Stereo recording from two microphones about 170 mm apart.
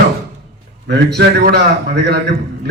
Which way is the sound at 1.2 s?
75° right (ahead or behind).